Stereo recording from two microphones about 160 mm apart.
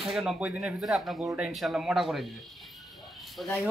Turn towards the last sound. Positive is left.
turn(degrees=0)  # may be behind; listen again after turning